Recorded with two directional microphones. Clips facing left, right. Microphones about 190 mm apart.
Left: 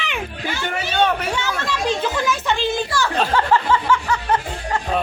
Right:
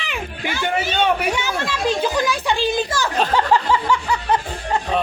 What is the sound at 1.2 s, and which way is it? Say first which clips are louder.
A child's voice: right 2 dB; 15° right (ahead or behind).